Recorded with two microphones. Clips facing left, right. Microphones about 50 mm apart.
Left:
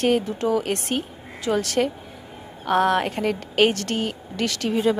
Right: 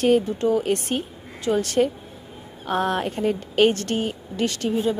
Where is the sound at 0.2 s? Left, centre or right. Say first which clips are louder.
Right 1 dB; left.